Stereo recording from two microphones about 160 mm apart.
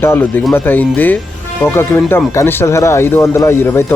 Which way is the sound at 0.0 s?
15° left (ahead or behind).